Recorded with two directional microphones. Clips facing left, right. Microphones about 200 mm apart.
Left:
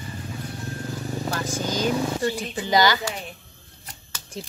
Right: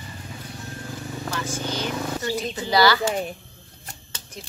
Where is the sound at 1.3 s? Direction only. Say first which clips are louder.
Left 1 dB; 40° left (ahead or behind).